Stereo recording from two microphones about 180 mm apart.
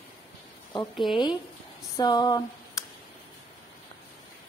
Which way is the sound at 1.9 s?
20° left (ahead or behind).